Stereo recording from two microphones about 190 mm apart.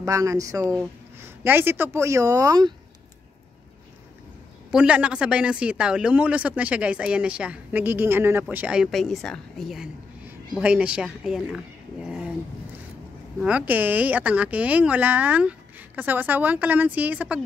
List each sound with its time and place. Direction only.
0.0 s speech: 15° right (ahead or behind)
4.6 s a man's voice: 5° right (ahead or behind)
13.4 s speech: 5° right (ahead or behind)